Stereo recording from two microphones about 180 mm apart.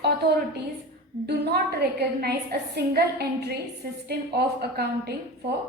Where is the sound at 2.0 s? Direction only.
65° right (ahead or behind).